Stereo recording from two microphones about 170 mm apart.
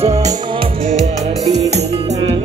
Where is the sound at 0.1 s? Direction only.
20° right (ahead or behind).